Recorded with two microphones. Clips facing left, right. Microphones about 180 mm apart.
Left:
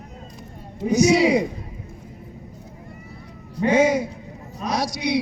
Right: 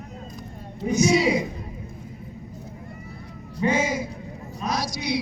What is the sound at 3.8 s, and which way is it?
Speech, 70° left (ahead or behind).